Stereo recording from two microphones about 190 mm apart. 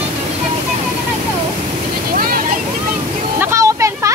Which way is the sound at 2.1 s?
50° right (ahead or behind).